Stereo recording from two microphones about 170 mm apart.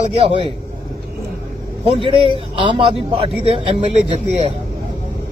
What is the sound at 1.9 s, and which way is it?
A man's voice, 30° right (ahead or behind).